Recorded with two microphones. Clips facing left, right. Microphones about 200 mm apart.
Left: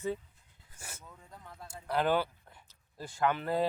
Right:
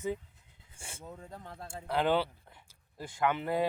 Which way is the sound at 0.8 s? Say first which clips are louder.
Right 6 dB; 30° right (ahead or behind).